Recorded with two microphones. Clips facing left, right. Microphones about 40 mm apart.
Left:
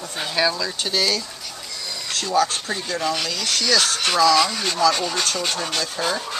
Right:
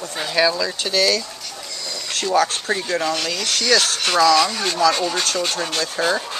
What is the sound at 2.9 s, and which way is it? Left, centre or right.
Speech, centre.